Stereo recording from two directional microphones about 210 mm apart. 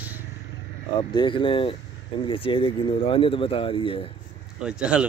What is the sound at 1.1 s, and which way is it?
Speech, 25° left (ahead or behind).